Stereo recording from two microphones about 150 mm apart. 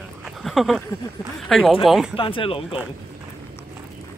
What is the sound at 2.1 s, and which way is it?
Speech, 35° left (ahead or behind).